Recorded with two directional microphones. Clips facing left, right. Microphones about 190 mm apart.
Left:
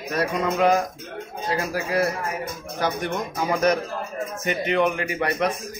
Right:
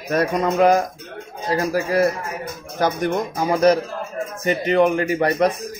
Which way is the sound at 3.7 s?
35° right (ahead or behind).